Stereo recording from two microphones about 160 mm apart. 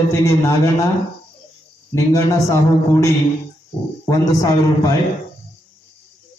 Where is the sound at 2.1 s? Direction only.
20° left (ahead or behind).